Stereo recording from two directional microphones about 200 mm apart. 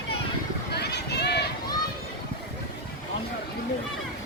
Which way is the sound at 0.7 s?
55° left (ahead or behind).